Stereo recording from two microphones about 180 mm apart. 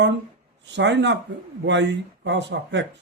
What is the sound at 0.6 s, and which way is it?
Speech, 80° right.